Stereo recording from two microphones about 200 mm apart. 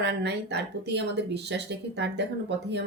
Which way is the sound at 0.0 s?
60° right (ahead or behind).